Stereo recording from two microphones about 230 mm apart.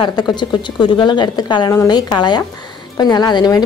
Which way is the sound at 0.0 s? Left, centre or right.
Centre.